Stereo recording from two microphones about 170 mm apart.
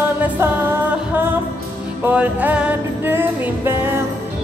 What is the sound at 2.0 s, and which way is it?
Music, 10° right (ahead or behind).